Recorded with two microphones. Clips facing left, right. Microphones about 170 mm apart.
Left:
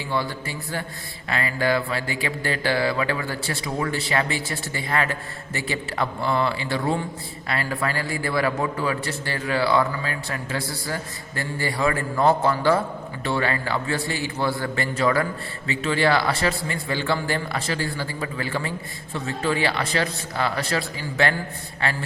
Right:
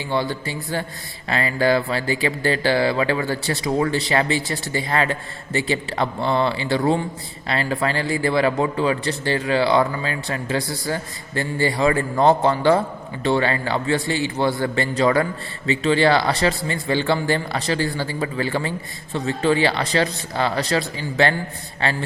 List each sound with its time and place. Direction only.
0.1 s a man's voice: 30° right (ahead or behind)